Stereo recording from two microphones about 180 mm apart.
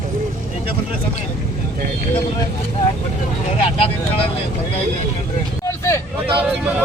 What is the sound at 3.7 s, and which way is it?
Speech, 30° left (ahead or behind).